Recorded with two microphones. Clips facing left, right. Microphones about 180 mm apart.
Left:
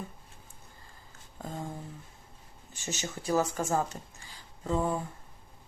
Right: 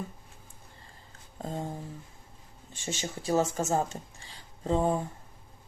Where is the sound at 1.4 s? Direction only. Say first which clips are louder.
Right 3 dB; 30° right (ahead or behind).